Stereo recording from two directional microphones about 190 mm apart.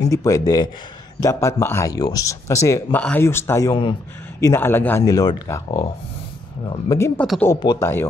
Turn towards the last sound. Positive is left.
turn(degrees=20)  # may be behind; listen again after turning